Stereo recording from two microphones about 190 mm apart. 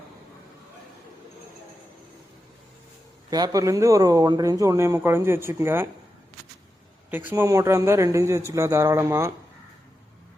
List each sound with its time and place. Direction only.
3.2 s speech: 20° right (ahead or behind)
7.1 s speech: 10° right (ahead or behind)